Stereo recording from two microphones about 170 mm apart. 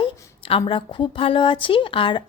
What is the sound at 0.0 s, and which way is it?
A woman's voice, 35° left (ahead or behind).